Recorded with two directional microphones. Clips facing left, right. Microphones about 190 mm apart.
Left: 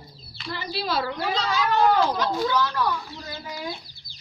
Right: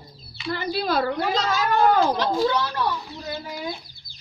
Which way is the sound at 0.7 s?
50° right (ahead or behind).